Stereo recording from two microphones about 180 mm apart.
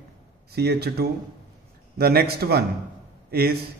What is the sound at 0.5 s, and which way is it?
A man's voice, 60° right (ahead or behind).